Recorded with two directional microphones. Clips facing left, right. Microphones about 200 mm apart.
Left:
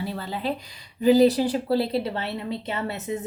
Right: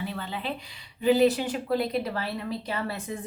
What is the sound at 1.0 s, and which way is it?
A woman's voice, 35° left (ahead or behind).